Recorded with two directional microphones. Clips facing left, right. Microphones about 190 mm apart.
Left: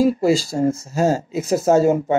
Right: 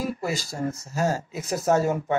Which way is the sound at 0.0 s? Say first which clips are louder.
Left 12 dB; 30° left (ahead or behind).